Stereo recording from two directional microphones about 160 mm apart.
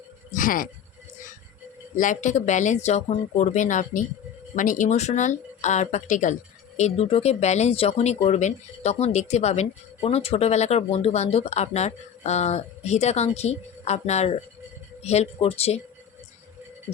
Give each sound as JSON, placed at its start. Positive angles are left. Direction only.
{"t": 0.3, "sound": "speech", "side_deg": 60}
{"t": 2.0, "sound": "speech", "side_deg": 50}